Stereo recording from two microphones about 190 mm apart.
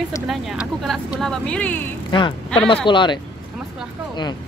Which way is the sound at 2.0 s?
25° left (ahead or behind).